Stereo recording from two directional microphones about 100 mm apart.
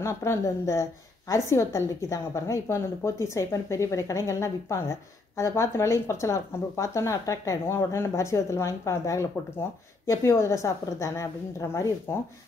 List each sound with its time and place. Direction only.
0.0 s speech: 30° left (ahead or behind)